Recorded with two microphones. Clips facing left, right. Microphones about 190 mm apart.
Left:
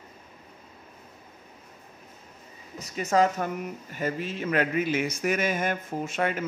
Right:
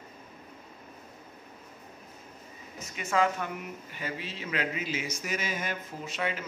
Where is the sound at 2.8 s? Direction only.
40° left (ahead or behind).